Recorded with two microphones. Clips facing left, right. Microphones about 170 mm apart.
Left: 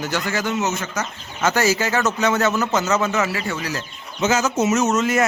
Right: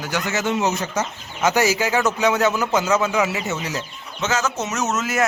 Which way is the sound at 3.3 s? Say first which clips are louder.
Even; 20° right (ahead or behind).